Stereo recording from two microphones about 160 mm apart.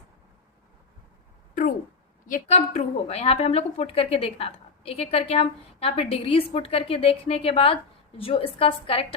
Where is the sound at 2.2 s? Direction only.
50° left (ahead or behind).